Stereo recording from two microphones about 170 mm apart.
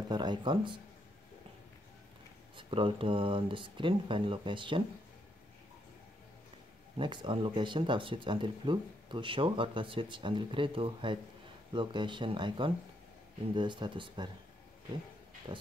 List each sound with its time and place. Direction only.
0.1 s speech: 25° right (ahead or behind)
2.5 s speech: 30° right (ahead or behind)
7.0 s speech: 30° right (ahead or behind)